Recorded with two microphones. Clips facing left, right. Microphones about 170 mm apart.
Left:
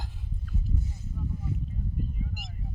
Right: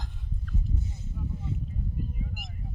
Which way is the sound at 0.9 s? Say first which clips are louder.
Left 1 dB; 25° right (ahead or behind).